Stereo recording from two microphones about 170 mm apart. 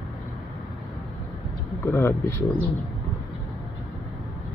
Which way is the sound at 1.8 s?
15° left (ahead or behind).